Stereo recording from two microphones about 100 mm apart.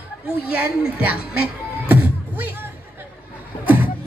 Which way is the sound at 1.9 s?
20° right (ahead or behind).